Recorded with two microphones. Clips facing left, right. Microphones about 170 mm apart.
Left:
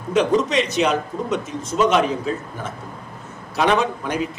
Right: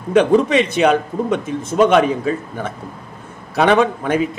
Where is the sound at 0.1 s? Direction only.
55° right (ahead or behind).